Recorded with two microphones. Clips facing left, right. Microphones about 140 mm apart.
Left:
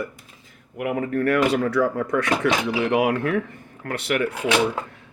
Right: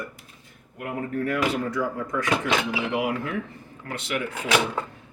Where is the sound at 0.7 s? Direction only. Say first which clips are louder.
Left 5 dB; 90° left; by 4.2 s 60° left (ahead or behind).